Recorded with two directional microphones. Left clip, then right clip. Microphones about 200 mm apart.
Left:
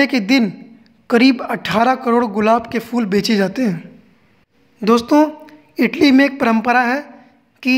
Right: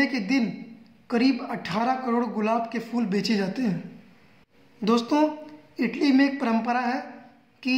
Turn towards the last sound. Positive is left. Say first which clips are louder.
# left 10 dB
turn(degrees=45)  # may be behind; listen again after turning